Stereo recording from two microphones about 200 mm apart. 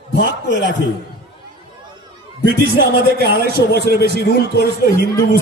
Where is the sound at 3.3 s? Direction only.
50° right (ahead or behind).